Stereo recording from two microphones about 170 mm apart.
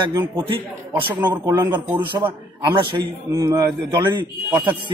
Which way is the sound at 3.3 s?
20° right (ahead or behind).